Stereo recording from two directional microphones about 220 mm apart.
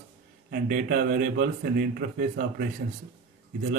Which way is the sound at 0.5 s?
40° right (ahead or behind).